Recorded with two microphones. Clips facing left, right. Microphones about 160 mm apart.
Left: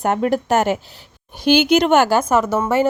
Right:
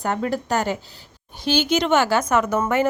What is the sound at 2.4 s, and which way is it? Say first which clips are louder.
Speech: left 2 dB; 5° left (ahead or behind).